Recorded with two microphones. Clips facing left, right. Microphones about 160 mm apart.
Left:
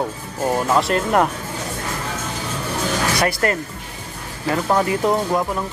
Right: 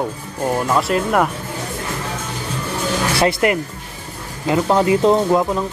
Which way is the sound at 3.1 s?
25° right (ahead or behind).